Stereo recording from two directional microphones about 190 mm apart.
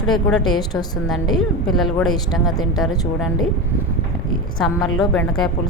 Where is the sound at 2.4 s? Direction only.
20° left (ahead or behind).